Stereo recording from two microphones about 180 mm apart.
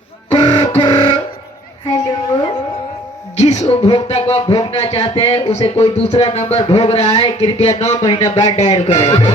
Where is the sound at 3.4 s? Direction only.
40° left (ahead or behind).